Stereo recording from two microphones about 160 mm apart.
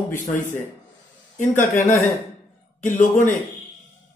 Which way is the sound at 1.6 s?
50° left (ahead or behind).